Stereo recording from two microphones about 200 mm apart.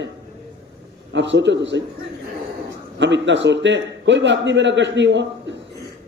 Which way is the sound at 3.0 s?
65° right (ahead or behind).